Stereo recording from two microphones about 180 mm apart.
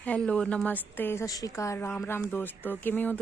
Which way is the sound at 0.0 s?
5° left (ahead or behind).